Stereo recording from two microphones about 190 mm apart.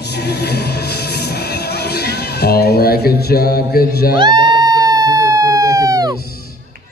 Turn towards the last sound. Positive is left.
turn(degrees=-20)  # may be behind; listen again after turning